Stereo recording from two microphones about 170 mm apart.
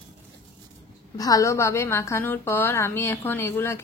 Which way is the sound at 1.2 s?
20° left (ahead or behind).